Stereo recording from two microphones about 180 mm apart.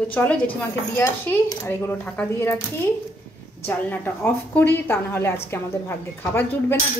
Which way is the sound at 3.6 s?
10° left (ahead or behind).